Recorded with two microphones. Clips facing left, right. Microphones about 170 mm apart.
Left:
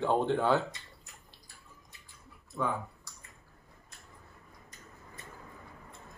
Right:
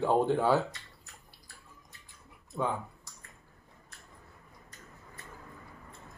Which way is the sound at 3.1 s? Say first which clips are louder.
Even; 20° right (ahead or behind).